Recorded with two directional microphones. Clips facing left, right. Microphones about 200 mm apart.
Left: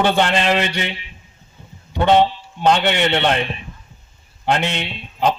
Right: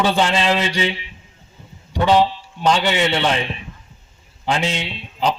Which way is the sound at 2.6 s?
60° left (ahead or behind).